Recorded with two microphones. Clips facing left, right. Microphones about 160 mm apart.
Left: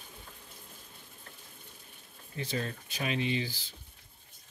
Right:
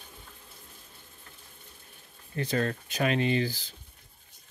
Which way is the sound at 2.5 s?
65° right (ahead or behind).